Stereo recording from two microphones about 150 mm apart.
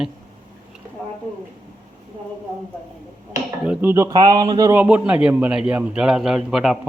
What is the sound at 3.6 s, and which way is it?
Speech, 10° right (ahead or behind).